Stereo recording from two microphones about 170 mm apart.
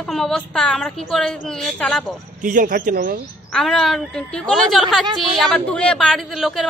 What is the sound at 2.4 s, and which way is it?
Speech, 50° right (ahead or behind).